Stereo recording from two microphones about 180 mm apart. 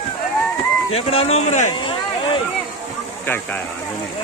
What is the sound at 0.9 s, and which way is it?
Speech, 35° left (ahead or behind).